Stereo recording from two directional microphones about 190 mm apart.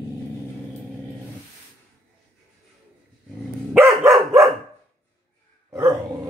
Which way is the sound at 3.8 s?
15° right (ahead or behind).